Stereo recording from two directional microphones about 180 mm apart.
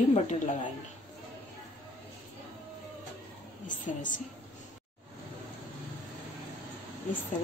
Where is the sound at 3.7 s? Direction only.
45° left (ahead or behind).